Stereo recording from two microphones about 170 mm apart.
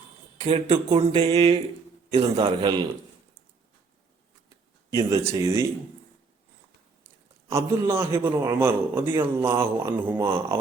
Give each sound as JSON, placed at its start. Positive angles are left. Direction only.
{"t": 0.3, "sound": "speech", "side_deg": -30}
{"t": 4.9, "sound": "speech", "side_deg": -20}
{"t": 7.4, "sound": "a man's voice", "side_deg": -15}